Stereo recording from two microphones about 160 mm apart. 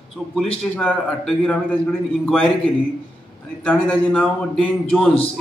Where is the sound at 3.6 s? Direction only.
10° left (ahead or behind).